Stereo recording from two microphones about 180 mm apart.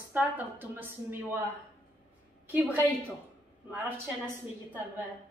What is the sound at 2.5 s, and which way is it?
Speech, 10° right (ahead or behind).